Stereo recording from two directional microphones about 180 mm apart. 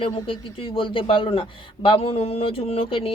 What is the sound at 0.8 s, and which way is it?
Speech, 30° left (ahead or behind).